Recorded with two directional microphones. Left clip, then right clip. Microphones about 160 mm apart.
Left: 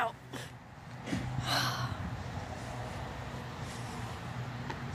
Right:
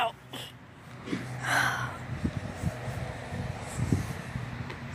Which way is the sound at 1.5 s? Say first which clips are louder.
Right 6 dB; centre (ahead or behind).